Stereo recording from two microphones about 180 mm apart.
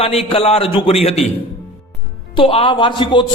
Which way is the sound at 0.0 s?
35° left (ahead or behind).